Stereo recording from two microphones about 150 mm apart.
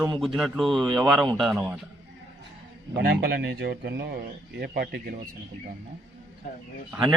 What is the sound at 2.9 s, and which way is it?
Speech, 90° right.